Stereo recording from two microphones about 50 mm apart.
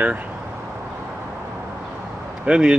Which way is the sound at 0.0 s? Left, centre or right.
Right.